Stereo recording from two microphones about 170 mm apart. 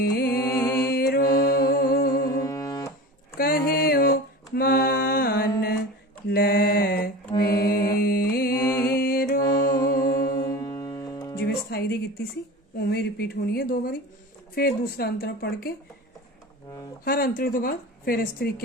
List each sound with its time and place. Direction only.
0.0 s music: 70° left (ahead or behind)
0.4 s music: 15° left (ahead or behind)
0.9 s mantra: 65° left (ahead or behind)
1.3 s music: 20° left (ahead or behind)
1.7 s music: 60° left (ahead or behind)
2.2 s music: 20° left (ahead or behind)
3.3 s music: 60° left (ahead or behind)
6.2 s mantra: 70° left (ahead or behind)
7.7 s music: 60° left (ahead or behind)
9.4 s music: 20° left (ahead or behind)
11.3 s music: 70° left (ahead or behind)
12.8 s speech: 75° left (ahead or behind)
17.0 s speech: 60° left (ahead or behind)